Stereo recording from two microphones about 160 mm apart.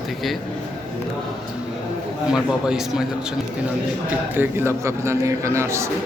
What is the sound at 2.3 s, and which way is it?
Speech, 5° right (ahead or behind).